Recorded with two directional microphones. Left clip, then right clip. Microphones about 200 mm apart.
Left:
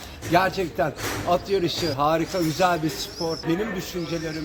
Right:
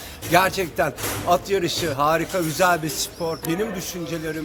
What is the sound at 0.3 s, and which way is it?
A man's voice, 10° right (ahead or behind).